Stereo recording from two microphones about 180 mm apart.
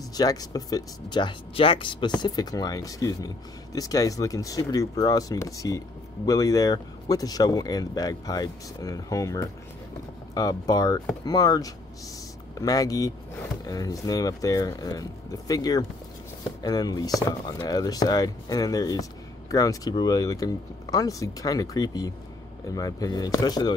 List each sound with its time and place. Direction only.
0.1 s speech: 20° left (ahead or behind)